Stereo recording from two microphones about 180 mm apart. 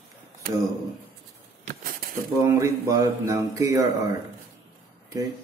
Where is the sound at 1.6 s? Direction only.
50° right (ahead or behind).